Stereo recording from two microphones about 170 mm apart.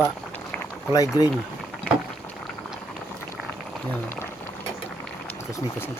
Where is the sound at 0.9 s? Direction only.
20° left (ahead or behind).